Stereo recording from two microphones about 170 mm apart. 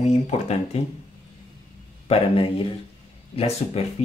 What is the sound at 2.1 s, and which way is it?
Speech, 35° left (ahead or behind).